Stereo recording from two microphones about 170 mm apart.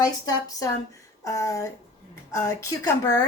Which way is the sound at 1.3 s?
20° left (ahead or behind).